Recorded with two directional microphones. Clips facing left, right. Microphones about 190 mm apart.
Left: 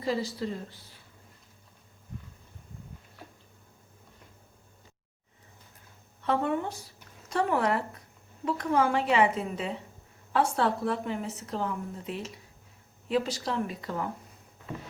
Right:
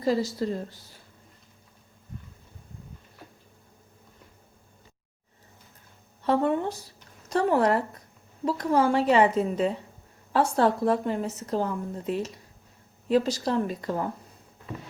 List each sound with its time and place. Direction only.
0.0 s a woman's voice: 40° right (ahead or behind)
6.2 s a woman's voice: 35° right (ahead or behind)